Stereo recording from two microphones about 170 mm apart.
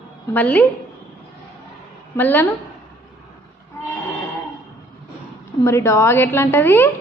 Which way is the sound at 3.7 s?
20° left (ahead or behind).